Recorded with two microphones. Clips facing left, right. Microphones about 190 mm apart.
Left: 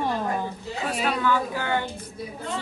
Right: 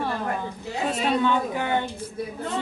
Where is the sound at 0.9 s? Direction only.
25° right (ahead or behind).